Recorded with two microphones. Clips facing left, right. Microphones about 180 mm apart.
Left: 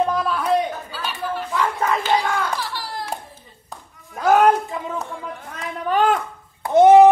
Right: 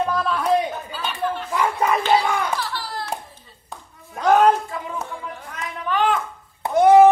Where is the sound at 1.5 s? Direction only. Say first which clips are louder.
Right 1 dB; 15° right (ahead or behind).